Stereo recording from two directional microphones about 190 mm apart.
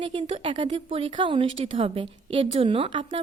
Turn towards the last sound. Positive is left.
turn(degrees=-25)  # may be behind; listen again after turning